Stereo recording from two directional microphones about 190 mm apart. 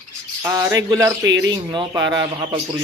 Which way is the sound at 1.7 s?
20° right (ahead or behind).